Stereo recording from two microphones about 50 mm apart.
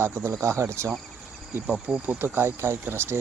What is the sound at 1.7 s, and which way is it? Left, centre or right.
Speech, right.